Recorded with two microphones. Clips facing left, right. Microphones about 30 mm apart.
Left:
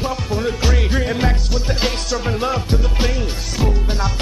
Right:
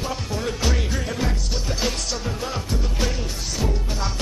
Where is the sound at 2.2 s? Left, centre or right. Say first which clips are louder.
Left 8 dB; left.